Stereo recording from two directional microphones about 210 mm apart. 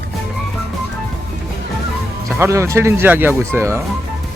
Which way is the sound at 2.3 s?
10° right (ahead or behind).